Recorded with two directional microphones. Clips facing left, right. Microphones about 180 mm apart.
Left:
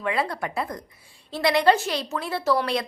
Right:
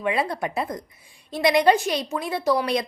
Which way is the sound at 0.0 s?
20° right (ahead or behind).